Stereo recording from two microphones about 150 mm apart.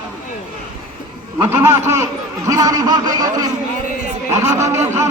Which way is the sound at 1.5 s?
15° right (ahead or behind).